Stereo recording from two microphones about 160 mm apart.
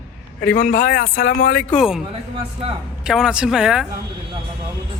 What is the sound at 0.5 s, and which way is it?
Speech, 60° left (ahead or behind).